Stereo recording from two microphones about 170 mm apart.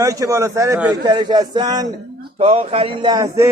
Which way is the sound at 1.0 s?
25° right (ahead or behind).